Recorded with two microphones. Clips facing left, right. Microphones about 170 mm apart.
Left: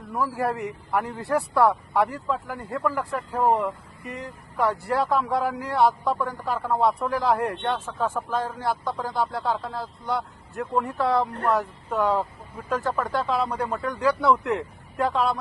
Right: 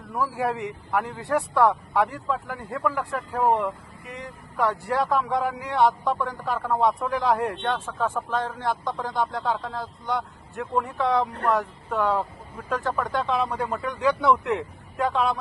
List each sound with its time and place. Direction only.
0.1 s speech: centre (ahead or behind)
4.6 s speech: 15° left (ahead or behind)
5.1 s speech: centre (ahead or behind)
11.9 s speech: 10° left (ahead or behind)